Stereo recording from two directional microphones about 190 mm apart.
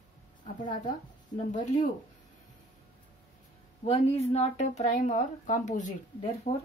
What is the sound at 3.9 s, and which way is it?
A woman's voice, 35° left (ahead or behind).